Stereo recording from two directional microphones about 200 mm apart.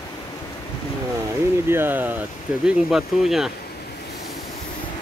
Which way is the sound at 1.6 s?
10° right (ahead or behind).